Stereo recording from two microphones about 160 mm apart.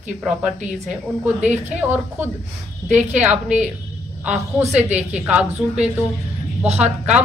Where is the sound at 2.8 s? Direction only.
50° right (ahead or behind).